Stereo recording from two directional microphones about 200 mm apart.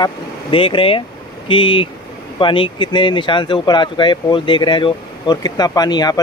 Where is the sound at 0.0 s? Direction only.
25° left (ahead or behind).